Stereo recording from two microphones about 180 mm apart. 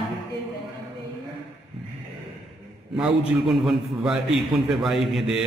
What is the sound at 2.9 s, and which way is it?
A man's voice, centre (ahead or behind).